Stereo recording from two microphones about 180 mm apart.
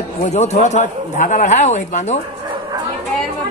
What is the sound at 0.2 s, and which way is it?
A man's voice, 40° left (ahead or behind).